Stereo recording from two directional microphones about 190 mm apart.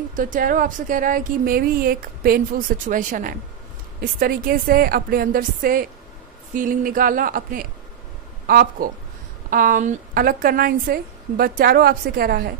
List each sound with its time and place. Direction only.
0.1 s speech: 45° right (ahead or behind)